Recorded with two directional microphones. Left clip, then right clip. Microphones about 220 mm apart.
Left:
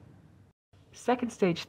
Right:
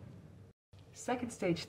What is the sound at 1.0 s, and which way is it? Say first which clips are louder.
Speech: left 8 dB; 55° left (ahead or behind).